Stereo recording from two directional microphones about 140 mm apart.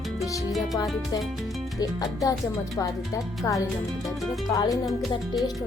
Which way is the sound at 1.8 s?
25° left (ahead or behind).